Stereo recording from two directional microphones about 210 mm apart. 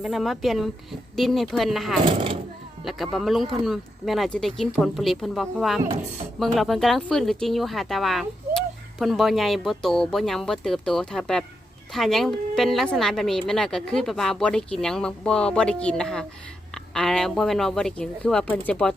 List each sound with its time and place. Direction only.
0.0 s speech: centre (ahead or behind)
2.0 s speech: 25° right (ahead or behind)
2.8 s speech: centre (ahead or behind)